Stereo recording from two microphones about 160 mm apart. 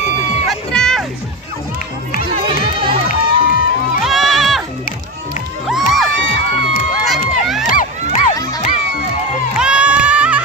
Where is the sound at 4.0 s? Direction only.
Centre (ahead or behind).